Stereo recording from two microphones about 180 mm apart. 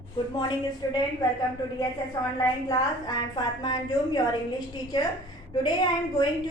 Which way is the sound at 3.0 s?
25° left (ahead or behind).